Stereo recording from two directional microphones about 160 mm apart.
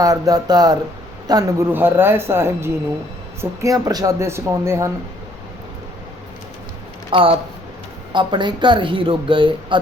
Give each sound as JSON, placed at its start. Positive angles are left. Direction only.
{"t": 0.0, "sound": "speech", "side_deg": -25}
{"t": 7.1, "sound": "speech", "side_deg": -35}